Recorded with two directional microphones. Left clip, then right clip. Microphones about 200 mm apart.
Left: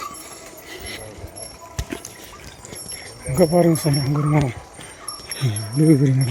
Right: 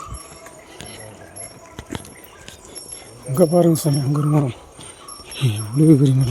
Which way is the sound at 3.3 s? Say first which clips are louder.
Right 1 dB; 10° right (ahead or behind).